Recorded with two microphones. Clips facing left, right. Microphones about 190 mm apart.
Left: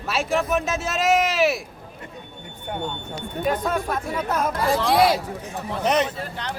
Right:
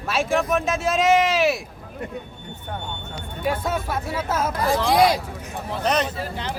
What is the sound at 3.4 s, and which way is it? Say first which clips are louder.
Speech: left 1 dB; 5° right (ahead or behind).